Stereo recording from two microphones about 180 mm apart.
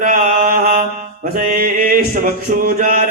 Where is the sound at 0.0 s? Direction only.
50° right (ahead or behind).